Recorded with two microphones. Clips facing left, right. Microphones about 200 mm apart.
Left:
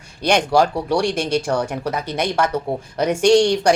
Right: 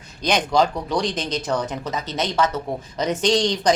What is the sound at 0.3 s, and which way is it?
A woman's voice, 10° left (ahead or behind).